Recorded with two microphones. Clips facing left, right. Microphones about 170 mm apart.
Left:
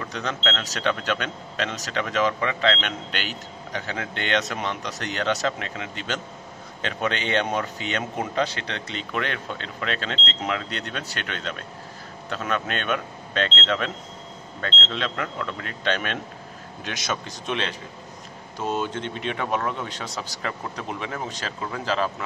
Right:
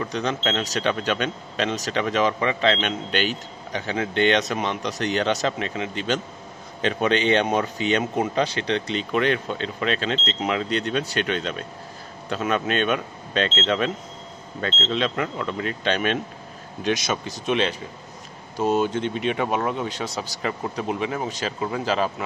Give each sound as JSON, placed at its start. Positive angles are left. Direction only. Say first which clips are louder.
{"t": 0.1, "sound": "a man's voice", "louder": "right 1 dB", "side_deg": -15}